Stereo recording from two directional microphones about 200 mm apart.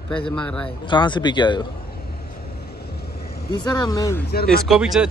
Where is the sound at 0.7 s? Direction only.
25° left (ahead or behind).